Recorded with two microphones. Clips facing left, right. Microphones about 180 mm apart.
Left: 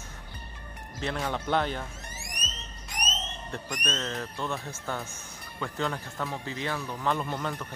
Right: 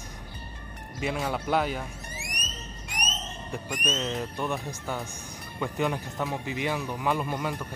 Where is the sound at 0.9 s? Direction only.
10° right (ahead or behind).